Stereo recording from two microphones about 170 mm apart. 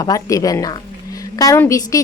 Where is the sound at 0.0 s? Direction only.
20° left (ahead or behind).